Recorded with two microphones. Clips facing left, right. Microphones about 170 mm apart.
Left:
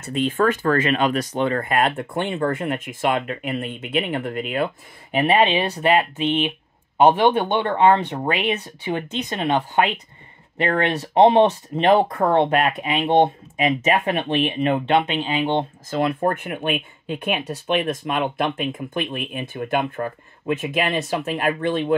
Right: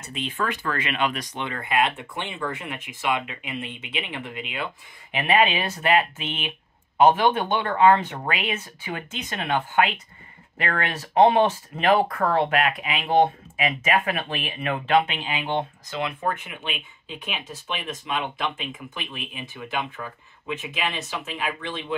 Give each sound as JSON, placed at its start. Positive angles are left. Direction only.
{"t": 0.0, "sound": "speech", "side_deg": 50}
{"t": 5.1, "sound": "speech", "side_deg": 30}
{"t": 15.9, "sound": "speech", "side_deg": 45}